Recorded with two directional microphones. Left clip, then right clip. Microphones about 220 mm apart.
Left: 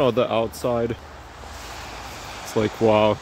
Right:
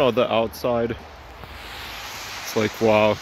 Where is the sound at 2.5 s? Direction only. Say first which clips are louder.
Even; 10° left (ahead or behind).